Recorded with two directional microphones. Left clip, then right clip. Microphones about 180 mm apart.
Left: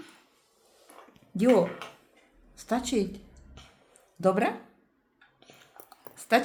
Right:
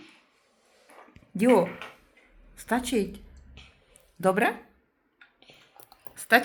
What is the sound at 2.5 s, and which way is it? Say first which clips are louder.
Speech: right 2 dB; 5° left (ahead or behind).